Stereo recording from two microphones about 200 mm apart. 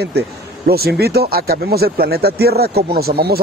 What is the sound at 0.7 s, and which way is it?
Speech, 50° right (ahead or behind).